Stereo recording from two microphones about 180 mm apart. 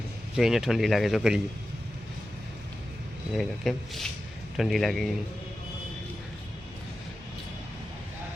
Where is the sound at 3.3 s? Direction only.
Centre (ahead or behind).